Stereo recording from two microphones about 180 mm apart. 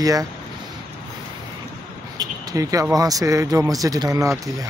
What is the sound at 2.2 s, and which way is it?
Speech, 20° right (ahead or behind).